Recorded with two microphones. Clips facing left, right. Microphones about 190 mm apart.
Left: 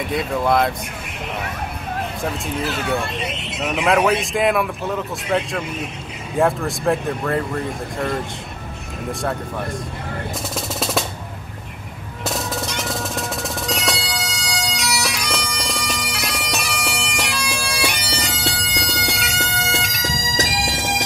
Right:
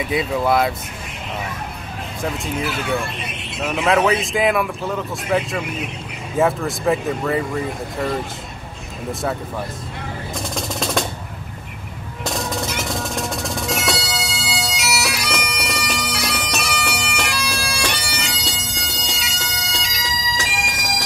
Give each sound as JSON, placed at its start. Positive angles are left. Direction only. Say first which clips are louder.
{"t": 0.0, "sound": "speech", "louder": "right 1 dB", "side_deg": -5}
{"t": 3.3, "sound": "speech", "louder": "right 3 dB", "side_deg": 20}
{"t": 4.1, "sound": "speech", "louder": "even", "side_deg": 0}
{"t": 10.5, "sound": "music", "louder": "right 1 dB", "side_deg": 5}
{"t": 12.3, "sound": "bagpipes", "louder": "right 1 dB", "side_deg": 0}
{"t": 18.1, "sound": "bagpipes", "louder": "left 2 dB", "side_deg": 40}
{"t": 18.4, "sound": "bagpipes", "louder": "left 4 dB", "side_deg": 65}